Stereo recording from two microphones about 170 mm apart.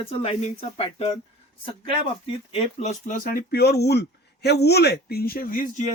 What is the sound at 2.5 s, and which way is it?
Speech, 40° left (ahead or behind).